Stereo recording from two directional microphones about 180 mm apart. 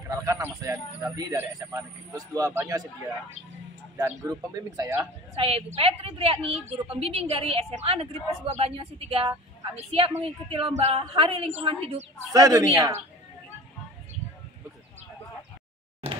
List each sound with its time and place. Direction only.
0.2 s a man's voice: 15° right (ahead or behind)
4.2 s a man's voice: 20° right (ahead or behind)
5.3 s a woman's voice: 35° right (ahead or behind)
12.3 s speech: 20° right (ahead or behind)
16.0 s a sound: 35° right (ahead or behind)